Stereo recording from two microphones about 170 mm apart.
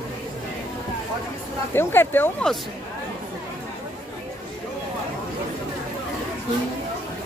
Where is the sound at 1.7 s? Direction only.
15° left (ahead or behind).